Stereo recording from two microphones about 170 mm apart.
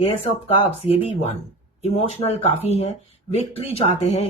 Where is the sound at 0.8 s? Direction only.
35° left (ahead or behind).